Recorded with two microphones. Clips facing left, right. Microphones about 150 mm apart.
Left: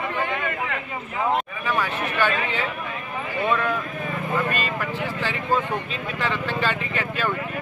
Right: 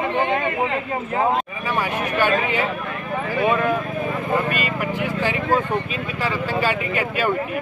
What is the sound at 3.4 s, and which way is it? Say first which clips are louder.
Speech: right 3 dB; 15° right (ahead or behind).